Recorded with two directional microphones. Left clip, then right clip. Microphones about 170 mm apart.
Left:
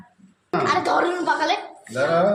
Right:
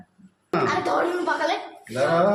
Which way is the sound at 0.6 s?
40° left (ahead or behind).